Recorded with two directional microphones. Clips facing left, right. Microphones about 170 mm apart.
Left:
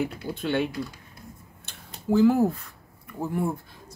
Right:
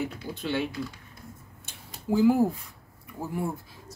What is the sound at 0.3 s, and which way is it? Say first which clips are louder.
Speech: left 4 dB; 25° left (ahead or behind).